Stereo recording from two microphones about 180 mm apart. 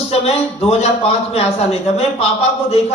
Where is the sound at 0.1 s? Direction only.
35° left (ahead or behind).